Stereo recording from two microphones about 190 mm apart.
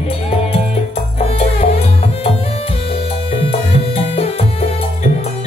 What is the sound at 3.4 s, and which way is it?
Music, 30° left (ahead or behind).